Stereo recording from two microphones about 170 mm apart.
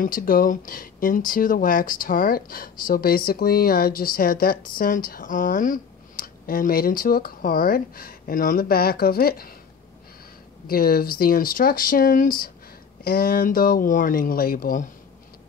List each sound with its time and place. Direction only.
0.0 s speech: 55° left (ahead or behind)
10.7 s speech: 60° left (ahead or behind)